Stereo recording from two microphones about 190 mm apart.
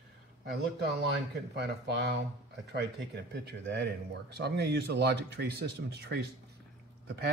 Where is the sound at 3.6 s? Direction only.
60° right (ahead or behind).